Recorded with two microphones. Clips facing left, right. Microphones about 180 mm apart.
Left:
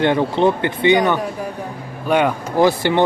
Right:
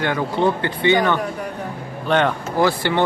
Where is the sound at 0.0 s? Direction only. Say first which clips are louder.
Left 4 dB; 25° left (ahead or behind).